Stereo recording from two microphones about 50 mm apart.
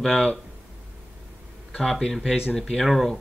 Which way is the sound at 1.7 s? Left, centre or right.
Centre.